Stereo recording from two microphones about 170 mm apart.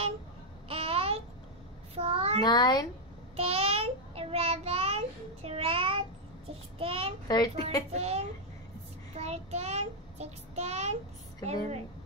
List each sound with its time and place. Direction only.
0.7 s babbling: 35° right (ahead or behind)
2.0 s child singing: 35° right (ahead or behind)
2.4 s a child's voice: 25° left (ahead or behind)
3.3 s child singing: 35° right (ahead or behind)
7.2 s a child's voice: 25° left (ahead or behind)
7.9 s child singing: 40° right (ahead or behind)